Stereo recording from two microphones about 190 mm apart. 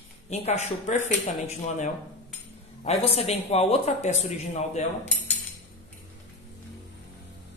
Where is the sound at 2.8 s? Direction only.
35° left (ahead or behind).